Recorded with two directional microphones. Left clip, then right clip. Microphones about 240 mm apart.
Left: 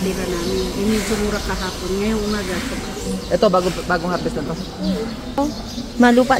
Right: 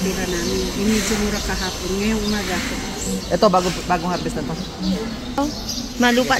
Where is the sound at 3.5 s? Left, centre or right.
Centre.